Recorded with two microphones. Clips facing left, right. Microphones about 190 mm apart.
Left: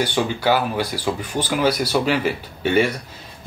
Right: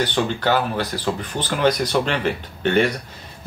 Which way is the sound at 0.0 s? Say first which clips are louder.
Left 1 dB; 10° left (ahead or behind).